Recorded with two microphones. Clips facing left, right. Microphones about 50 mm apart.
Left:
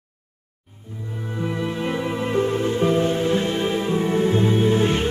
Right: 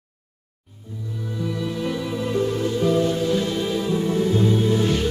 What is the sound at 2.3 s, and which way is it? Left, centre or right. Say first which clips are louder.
Music: left 1 dB; left.